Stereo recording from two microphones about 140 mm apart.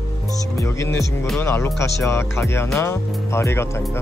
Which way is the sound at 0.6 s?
20° left (ahead or behind).